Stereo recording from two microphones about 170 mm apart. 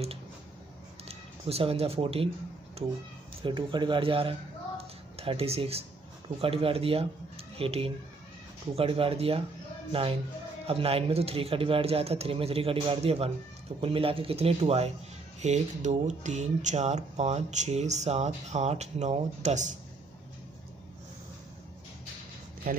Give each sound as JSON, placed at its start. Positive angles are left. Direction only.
{"t": 1.0, "sound": "speech", "side_deg": -35}
{"t": 10.7, "sound": "speech", "side_deg": -35}
{"t": 22.7, "sound": "speech", "side_deg": -55}